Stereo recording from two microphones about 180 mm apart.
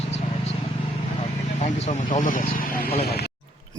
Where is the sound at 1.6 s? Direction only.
45° left (ahead or behind).